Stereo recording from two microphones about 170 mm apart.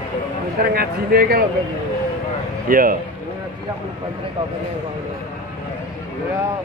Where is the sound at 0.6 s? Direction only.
65° right (ahead or behind).